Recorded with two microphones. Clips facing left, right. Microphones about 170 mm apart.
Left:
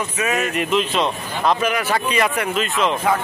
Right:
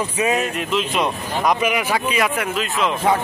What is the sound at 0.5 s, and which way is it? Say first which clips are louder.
Speech: left 2 dB; centre (ahead or behind).